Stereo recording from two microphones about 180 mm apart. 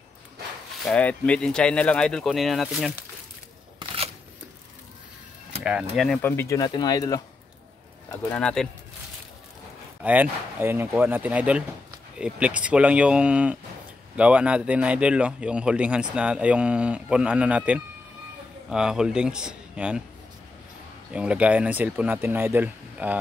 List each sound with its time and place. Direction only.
0.8 s speech: 5° left (ahead or behind)
3.8 s scissors: 30° right (ahead or behind)
5.6 s speech: 5° right (ahead or behind)
6.2 s speech: 15° left (ahead or behind)
8.1 s speech: 5° left (ahead or behind)
10.0 s speech: 10° right (ahead or behind)
21.1 s speech: 5° right (ahead or behind)